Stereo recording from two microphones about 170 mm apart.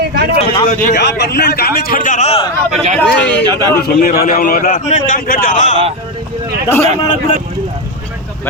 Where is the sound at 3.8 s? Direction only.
65° left (ahead or behind).